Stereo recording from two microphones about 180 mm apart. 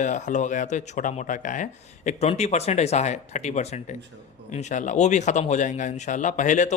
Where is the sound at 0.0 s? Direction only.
45° left (ahead or behind).